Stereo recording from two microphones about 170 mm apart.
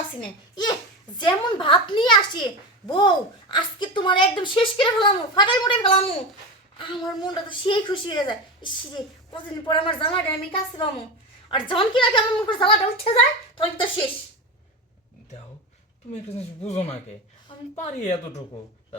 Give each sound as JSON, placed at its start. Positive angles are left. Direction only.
{"t": 0.5, "sound": "a sound", "side_deg": 25}
{"t": 1.2, "sound": "a woman's voice", "side_deg": 30}
{"t": 16.6, "sound": "a woman's voice", "side_deg": 40}